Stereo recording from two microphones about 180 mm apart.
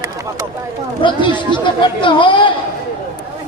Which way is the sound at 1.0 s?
25° left (ahead or behind).